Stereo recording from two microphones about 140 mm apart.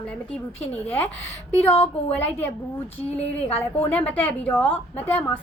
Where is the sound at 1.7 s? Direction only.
45° left (ahead or behind).